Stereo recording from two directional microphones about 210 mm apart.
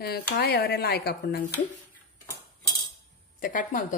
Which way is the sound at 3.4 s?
40° left (ahead or behind).